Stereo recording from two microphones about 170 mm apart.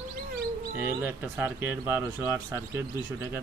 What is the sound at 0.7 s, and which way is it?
Speech, 10° right (ahead or behind).